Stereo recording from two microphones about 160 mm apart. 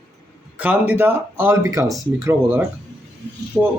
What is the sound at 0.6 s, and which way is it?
Speech, 10° right (ahead or behind).